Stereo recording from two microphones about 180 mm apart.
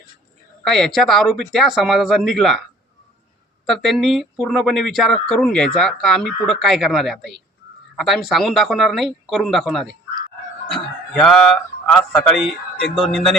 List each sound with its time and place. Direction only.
0.6 s speech: centre (ahead or behind)
3.7 s speech: centre (ahead or behind)
11.1 s speech: centre (ahead or behind)